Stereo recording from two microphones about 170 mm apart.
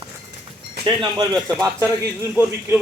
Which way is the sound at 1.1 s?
25° right (ahead or behind).